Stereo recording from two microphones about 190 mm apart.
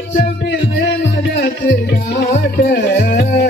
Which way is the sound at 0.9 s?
50° left (ahead or behind).